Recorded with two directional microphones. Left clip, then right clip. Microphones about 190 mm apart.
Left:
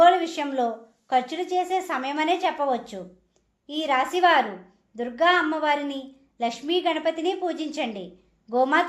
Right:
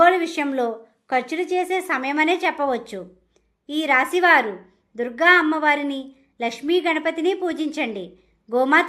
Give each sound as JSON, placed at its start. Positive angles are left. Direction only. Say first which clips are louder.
{"t": 0.0, "sound": "a woman's voice", "louder": "right 1 dB", "side_deg": -30}